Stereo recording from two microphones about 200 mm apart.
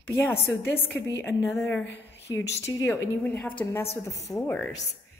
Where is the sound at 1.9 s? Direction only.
60° left (ahead or behind).